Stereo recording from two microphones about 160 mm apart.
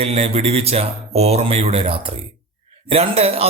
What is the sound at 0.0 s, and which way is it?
A man's voice, 40° right (ahead or behind).